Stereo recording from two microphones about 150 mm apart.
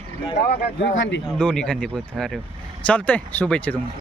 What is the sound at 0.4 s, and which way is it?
Speech, 90° left.